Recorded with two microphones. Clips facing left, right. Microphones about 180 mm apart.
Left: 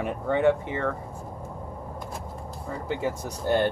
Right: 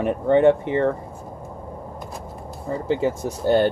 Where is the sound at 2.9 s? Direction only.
25° right (ahead or behind).